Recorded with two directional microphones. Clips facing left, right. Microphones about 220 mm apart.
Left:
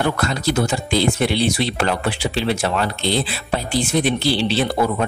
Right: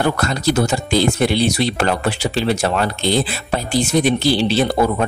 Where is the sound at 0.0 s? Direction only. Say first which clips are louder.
Right 2 dB; 40° right (ahead or behind).